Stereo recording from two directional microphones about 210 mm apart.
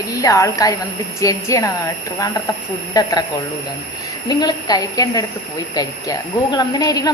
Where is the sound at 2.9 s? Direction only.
15° left (ahead or behind).